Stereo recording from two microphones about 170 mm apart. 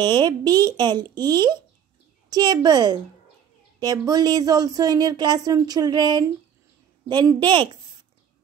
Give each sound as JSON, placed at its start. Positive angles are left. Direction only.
{"t": 0.0, "sound": "speech", "side_deg": -25}